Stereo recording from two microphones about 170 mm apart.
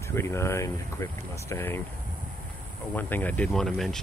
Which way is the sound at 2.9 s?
10° left (ahead or behind).